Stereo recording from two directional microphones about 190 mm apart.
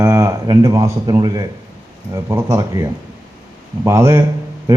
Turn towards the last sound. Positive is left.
turn(degrees=-15)  # may be behind; listen again after turning